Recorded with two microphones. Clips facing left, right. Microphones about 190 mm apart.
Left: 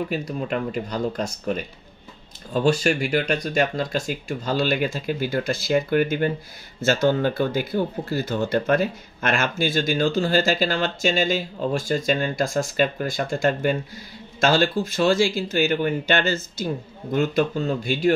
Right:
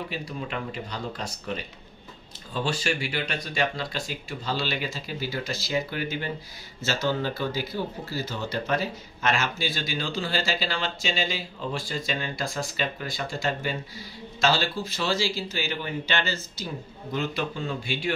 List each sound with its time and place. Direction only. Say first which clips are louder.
0.1 s speech: left 7 dB; 45° left (ahead or behind)